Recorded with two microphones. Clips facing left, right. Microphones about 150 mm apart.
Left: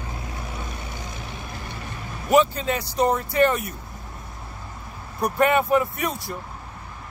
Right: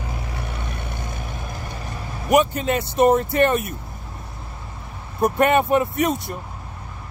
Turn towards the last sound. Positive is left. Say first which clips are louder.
# right 6 dB
turn(degrees=-20)  # may be behind; listen again after turning